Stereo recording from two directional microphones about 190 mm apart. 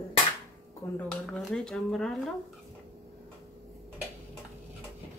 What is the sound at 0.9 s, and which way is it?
Speech, centre (ahead or behind).